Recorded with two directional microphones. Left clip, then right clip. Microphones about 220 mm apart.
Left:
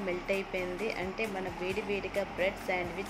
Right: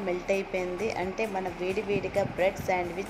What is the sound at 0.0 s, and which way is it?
Speech, 10° right (ahead or behind).